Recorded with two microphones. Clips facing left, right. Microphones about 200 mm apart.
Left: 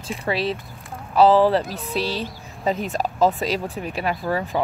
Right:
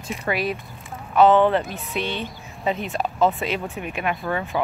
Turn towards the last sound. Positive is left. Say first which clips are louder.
# left 1 dB
turn(degrees=35)  # may be behind; listen again after turning